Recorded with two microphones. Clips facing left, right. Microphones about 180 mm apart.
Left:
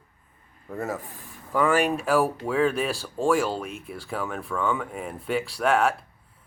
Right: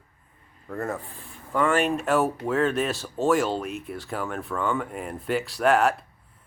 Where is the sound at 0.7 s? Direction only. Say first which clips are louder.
Even; 5° left (ahead or behind).